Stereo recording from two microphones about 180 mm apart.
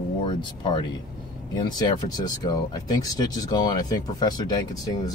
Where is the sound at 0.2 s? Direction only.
30° left (ahead or behind).